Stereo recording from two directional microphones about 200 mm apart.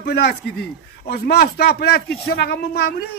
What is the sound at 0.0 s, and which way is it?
A man's voice, 55° left (ahead or behind).